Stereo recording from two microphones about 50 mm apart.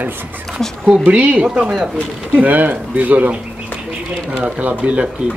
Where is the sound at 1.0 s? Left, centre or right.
Right.